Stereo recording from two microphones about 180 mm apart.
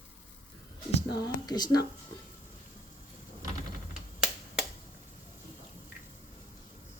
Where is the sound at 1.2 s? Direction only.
20° left (ahead or behind).